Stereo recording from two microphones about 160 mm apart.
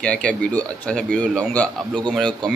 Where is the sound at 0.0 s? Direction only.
5° left (ahead or behind).